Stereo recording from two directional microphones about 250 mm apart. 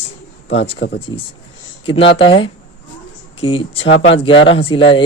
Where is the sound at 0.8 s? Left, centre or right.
Left.